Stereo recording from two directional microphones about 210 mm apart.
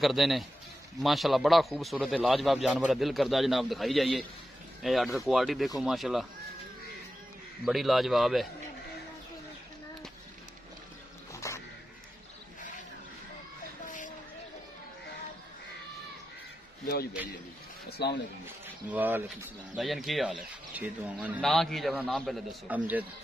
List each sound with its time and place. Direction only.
0.0 s a man's voice: centre (ahead or behind)
7.6 s a man's voice: centre (ahead or behind)
11.4 s a sound: 15° left (ahead or behind)
13.8 s a sound: 35° left (ahead or behind)
16.8 s speech: 45° left (ahead or behind)
18.9 s a man's voice: 10° right (ahead or behind)